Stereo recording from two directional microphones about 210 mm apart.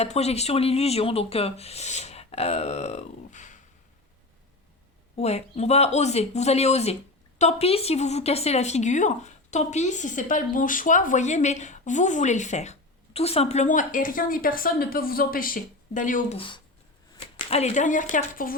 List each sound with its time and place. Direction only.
0.0 s speech: 30° left (ahead or behind)
5.1 s a woman's voice: 30° left (ahead or behind)